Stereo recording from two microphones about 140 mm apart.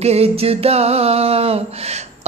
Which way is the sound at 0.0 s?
45° right (ahead or behind).